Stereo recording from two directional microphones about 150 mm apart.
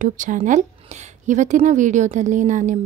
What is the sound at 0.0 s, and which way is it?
A woman's voice, 60° right (ahead or behind).